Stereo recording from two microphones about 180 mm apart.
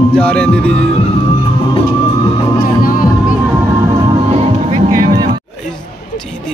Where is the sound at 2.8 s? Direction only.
50° left (ahead or behind).